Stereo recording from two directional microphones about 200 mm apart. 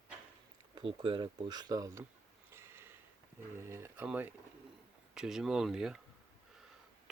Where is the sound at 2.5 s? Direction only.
10° right (ahead or behind).